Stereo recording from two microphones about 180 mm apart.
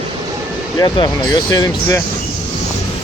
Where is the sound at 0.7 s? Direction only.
20° left (ahead or behind).